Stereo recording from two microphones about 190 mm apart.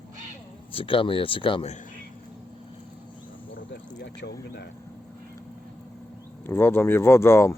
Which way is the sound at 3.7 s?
65° left (ahead or behind).